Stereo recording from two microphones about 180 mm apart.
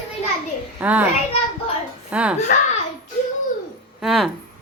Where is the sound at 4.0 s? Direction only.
Centre (ahead or behind).